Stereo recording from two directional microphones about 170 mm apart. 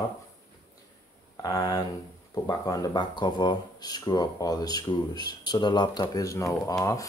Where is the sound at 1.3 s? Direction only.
20° left (ahead or behind).